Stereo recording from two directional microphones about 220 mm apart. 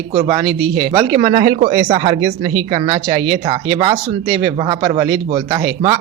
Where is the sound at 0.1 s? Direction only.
20° right (ahead or behind).